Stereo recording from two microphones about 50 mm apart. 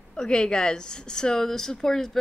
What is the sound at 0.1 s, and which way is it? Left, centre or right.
A woman's voice, centre.